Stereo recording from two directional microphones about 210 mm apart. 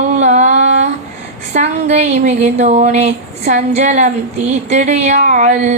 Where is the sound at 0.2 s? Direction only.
35° right (ahead or behind).